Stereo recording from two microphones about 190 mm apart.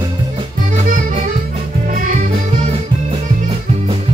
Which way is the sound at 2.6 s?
30° right (ahead or behind).